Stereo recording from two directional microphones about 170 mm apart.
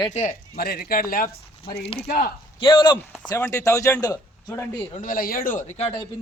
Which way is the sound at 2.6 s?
30° left (ahead or behind).